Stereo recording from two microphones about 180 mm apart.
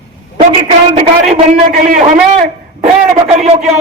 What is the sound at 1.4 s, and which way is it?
A man's voice, 45° right (ahead or behind).